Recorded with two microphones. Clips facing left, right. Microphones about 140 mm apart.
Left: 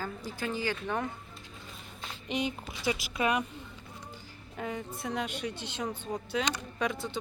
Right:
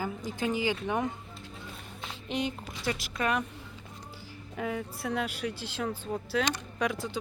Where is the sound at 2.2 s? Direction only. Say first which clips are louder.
Even; centre (ahead or behind).